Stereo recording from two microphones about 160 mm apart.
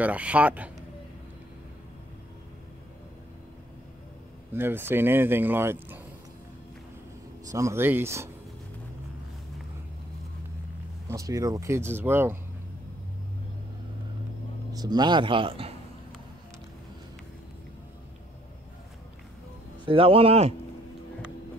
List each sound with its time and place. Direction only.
0.0 s speech: 10° right (ahead or behind)
4.6 s speech: 15° right (ahead or behind)
7.4 s speech: 20° right (ahead or behind)
11.1 s speech: 20° right (ahead or behind)
14.7 s speech: 25° right (ahead or behind)
19.8 s speech: 35° right (ahead or behind)